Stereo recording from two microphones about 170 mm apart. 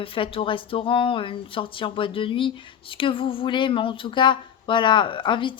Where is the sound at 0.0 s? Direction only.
30° left (ahead or behind).